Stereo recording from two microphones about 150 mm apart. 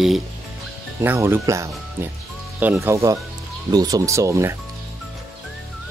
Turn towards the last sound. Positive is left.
turn(degrees=-20)  # may be behind; listen again after turning